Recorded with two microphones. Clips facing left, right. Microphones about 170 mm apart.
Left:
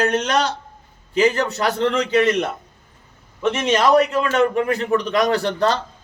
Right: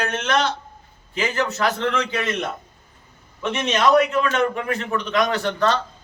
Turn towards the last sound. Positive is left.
turn(degrees=35)  # may be behind; listen again after turning